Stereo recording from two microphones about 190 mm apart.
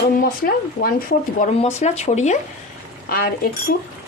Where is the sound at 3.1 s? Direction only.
50° left (ahead or behind).